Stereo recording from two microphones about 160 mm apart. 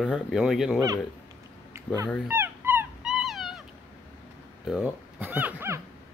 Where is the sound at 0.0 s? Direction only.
5° right (ahead or behind).